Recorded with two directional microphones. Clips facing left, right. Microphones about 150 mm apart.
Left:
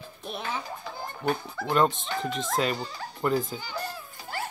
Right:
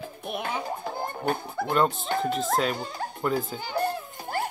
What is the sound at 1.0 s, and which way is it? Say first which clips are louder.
Pig: left 1 dB; 50° right (ahead or behind).